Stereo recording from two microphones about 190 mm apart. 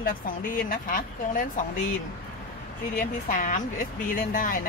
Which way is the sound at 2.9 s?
45° left (ahead or behind).